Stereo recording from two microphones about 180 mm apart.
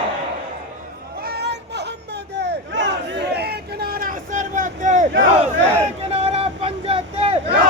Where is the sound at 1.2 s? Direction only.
65° right (ahead or behind).